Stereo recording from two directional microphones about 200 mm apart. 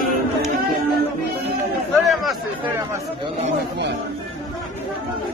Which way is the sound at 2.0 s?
Centre (ahead or behind).